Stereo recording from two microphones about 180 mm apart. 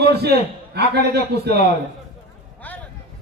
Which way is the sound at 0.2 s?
65° right (ahead or behind).